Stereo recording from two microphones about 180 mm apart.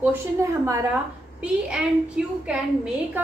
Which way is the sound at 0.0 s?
15° right (ahead or behind).